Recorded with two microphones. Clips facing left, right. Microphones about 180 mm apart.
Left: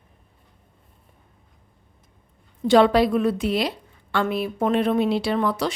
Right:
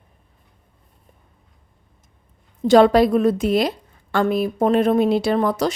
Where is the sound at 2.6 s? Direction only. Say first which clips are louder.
Right 3 dB; 40° right (ahead or behind).